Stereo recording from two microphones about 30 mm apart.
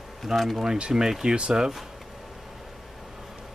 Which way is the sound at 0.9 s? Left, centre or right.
Centre.